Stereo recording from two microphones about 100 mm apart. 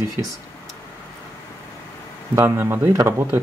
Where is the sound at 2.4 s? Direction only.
25° right (ahead or behind).